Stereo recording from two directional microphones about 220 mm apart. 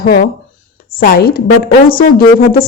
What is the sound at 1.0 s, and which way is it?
A woman's voice, 45° left (ahead or behind).